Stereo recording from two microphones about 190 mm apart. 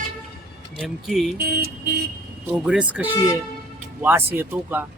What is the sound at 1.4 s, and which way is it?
Vehicle, 55° right (ahead or behind).